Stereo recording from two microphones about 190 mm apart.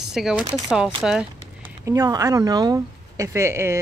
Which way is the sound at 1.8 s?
15° right (ahead or behind).